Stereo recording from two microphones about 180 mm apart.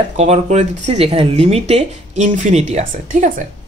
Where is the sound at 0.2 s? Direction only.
40° right (ahead or behind).